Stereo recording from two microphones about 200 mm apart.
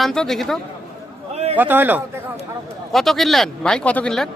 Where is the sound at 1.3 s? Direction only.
30° right (ahead or behind).